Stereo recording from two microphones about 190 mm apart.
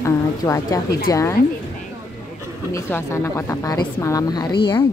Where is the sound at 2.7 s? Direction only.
15° left (ahead or behind).